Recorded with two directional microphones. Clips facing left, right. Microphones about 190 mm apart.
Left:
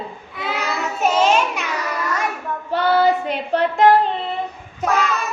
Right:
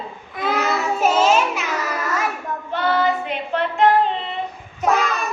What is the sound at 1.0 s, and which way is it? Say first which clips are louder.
Music: left 1 dB; 5° right (ahead or behind).